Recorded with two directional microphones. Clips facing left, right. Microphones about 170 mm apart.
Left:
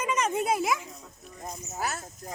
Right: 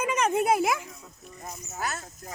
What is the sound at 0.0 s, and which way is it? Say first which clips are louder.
Speech: right 3 dB; 60° right (ahead or behind).